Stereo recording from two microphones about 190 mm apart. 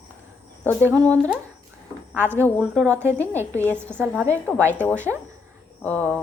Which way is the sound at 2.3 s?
5° left (ahead or behind).